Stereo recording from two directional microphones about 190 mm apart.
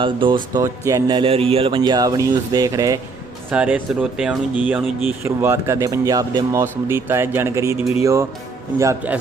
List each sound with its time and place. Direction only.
0.0 s speech: 25° right (ahead or behind)
3.5 s speech: 5° right (ahead or behind)